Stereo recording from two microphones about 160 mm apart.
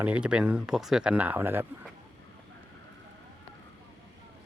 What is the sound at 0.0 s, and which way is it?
Speech, 5° right (ahead or behind).